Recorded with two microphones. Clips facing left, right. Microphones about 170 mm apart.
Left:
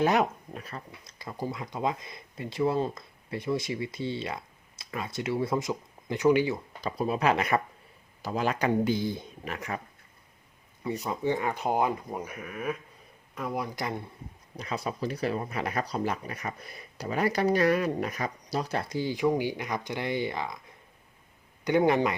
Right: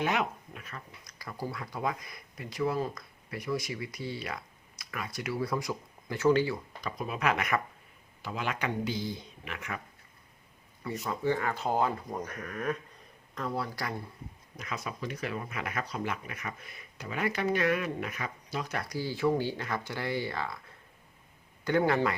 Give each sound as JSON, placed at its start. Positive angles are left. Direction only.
{"t": 0.0, "sound": "speech", "side_deg": 35}
{"t": 6.8, "sound": "speech", "side_deg": 30}
{"t": 9.4, "sound": "speech", "side_deg": 35}
{"t": 11.0, "sound": "speech", "side_deg": 20}
{"t": 14.6, "sound": "speech", "side_deg": 30}